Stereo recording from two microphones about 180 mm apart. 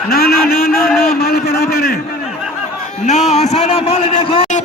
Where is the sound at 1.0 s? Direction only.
60° left (ahead or behind).